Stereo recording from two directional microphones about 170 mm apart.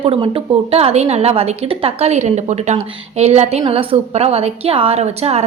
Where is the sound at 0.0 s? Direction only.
35° right (ahead or behind).